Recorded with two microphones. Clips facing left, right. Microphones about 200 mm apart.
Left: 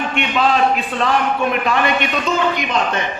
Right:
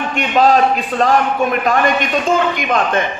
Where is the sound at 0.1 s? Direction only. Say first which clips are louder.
Right 6 dB; 40° right (ahead or behind).